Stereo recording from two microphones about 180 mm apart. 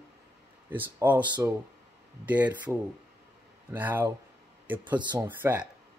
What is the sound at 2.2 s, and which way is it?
Speech, 10° right (ahead or behind).